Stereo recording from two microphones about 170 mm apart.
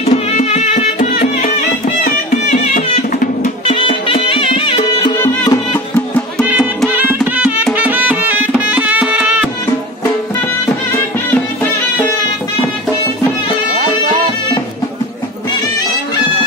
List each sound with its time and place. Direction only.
0.0 s music: 40° left (ahead or behind)
2.5 s music: 45° left (ahead or behind)
3.6 s music: 35° left (ahead or behind)
5.2 s music: 15° left (ahead or behind)
6.4 s music: 10° right (ahead or behind)